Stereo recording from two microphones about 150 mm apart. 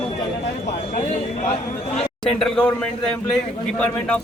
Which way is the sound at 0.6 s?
50° left (ahead or behind).